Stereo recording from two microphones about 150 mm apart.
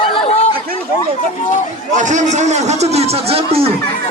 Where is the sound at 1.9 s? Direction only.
55° right (ahead or behind).